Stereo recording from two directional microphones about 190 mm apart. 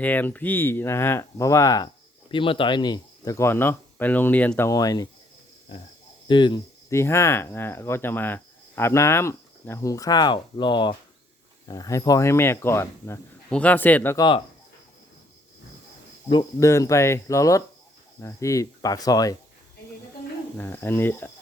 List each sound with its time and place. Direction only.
0.0 s speech: 10° left (ahead or behind)
6.2 s cricket: 25° left (ahead or behind)
7.0 s speech: 15° left (ahead or behind)
16.3 s speech: 20° left (ahead or behind)
20.6 s speech: 10° left (ahead or behind)